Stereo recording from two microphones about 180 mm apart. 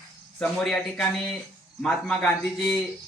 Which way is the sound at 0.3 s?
5° left (ahead or behind).